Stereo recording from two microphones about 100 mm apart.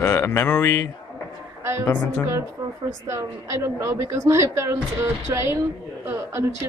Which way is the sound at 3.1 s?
30° right (ahead or behind).